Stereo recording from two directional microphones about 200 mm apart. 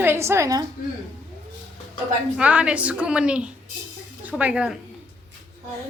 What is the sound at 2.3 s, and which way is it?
A woman's voice, 5° right (ahead or behind).